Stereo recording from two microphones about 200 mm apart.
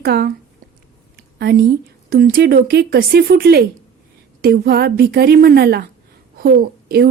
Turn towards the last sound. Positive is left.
turn(degrees=-50)  # may be behind; listen again after turning